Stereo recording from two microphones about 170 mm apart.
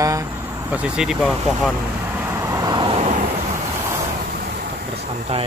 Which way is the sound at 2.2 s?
15° right (ahead or behind).